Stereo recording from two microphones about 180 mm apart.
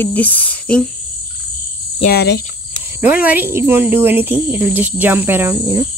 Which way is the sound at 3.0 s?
10° right (ahead or behind).